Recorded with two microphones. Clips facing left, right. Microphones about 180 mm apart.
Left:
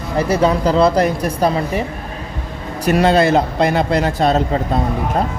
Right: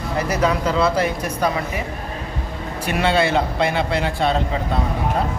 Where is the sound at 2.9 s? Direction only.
40° left (ahead or behind).